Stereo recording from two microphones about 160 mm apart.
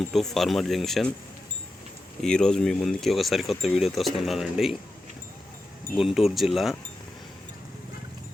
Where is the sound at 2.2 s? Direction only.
5° left (ahead or behind).